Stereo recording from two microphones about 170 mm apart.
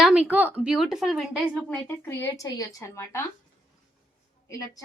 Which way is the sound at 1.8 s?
15° left (ahead or behind).